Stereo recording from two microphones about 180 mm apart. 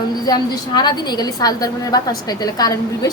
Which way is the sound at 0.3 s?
25° left (ahead or behind).